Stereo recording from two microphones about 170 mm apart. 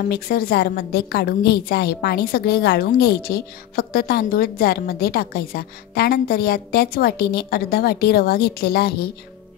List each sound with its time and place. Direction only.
0.1 s a woman's voice: 65° left (ahead or behind)